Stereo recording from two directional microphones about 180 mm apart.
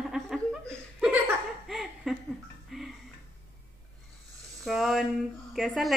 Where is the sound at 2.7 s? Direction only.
Centre (ahead or behind).